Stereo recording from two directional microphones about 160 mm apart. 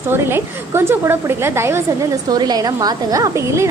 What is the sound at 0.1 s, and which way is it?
A woman's voice, 15° right (ahead or behind).